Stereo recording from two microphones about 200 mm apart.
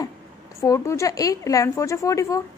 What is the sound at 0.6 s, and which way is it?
A woman's voice, 15° left (ahead or behind).